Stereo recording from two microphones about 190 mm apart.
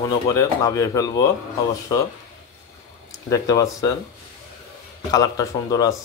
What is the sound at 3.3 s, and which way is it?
Speech, 20° left (ahead or behind).